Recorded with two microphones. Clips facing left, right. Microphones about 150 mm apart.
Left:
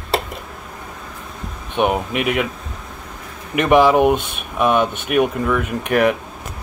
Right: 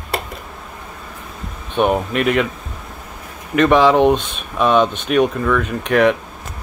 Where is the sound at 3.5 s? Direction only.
15° left (ahead or behind).